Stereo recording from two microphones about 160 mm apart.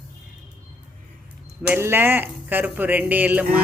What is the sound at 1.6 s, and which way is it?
Speech, 15° right (ahead or behind).